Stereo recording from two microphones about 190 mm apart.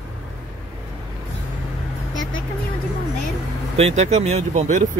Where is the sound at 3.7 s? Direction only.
35° right (ahead or behind).